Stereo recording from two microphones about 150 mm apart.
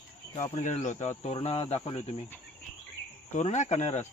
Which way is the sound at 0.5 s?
50° left (ahead or behind).